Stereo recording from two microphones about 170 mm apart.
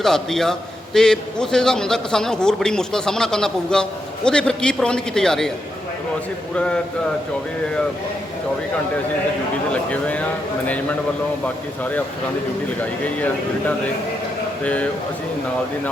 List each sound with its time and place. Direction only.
0.0 s a man's voice: centre (ahead or behind)
9.7 s speech: 10° left (ahead or behind)
11.4 s speech: 10° left (ahead or behind)
13.1 s speech: 10° left (ahead or behind)